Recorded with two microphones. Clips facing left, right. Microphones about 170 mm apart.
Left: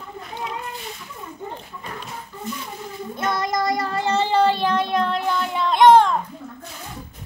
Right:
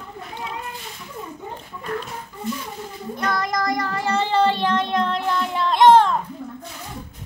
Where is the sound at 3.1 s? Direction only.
20° left (ahead or behind).